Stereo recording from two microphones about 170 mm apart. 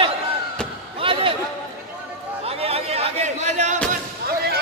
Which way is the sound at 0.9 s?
30° right (ahead or behind).